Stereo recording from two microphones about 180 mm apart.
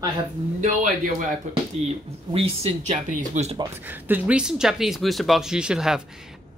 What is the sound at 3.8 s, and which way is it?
Speech, 10° right (ahead or behind).